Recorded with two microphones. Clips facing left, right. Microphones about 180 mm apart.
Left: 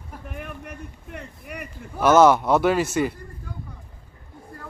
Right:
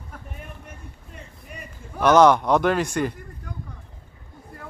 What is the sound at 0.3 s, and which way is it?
Speech, 70° left (ahead or behind).